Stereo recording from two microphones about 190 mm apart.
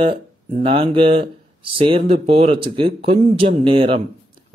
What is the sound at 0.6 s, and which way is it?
Speech, 30° right (ahead or behind).